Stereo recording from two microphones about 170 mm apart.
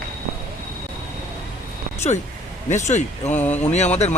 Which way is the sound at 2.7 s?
45° left (ahead or behind).